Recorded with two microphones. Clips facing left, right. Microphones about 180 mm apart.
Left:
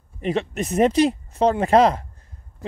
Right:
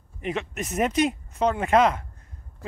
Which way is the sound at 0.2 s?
30° left (ahead or behind).